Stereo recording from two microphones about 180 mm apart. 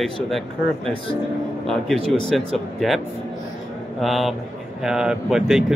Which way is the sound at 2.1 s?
Centre (ahead or behind).